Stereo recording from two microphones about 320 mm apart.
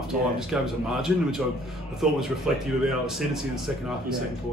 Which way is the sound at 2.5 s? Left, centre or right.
Centre.